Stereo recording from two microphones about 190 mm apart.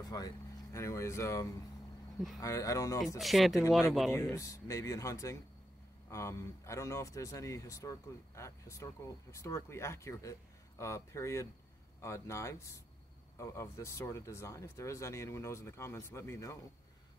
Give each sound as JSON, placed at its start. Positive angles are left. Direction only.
{"t": 0.0, "sound": "a sound", "side_deg": 20}
{"t": 0.7, "sound": "speech", "side_deg": 15}
{"t": 3.2, "sound": "speech", "side_deg": 0}
{"t": 4.1, "sound": "speech", "side_deg": 15}